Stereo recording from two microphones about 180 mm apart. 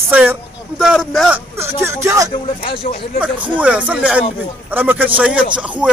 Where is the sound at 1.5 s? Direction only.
15° right (ahead or behind).